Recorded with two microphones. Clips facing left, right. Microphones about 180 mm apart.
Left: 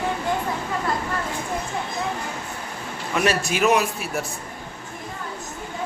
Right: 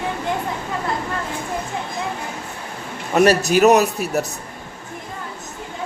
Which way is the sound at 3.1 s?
40° right (ahead or behind).